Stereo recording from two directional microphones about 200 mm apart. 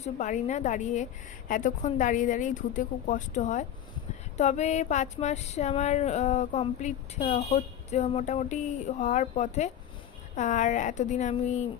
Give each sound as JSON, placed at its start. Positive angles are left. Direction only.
{"t": 0.0, "sound": "speech", "side_deg": 35}